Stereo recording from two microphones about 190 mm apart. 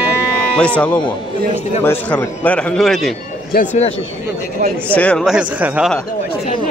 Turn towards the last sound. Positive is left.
turn(degrees=-5)  # may be behind; listen again after turning